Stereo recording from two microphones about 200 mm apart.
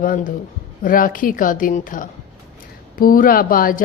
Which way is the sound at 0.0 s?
45° left (ahead or behind).